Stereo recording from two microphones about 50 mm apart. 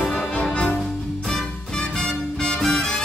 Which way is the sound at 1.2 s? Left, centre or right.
Centre.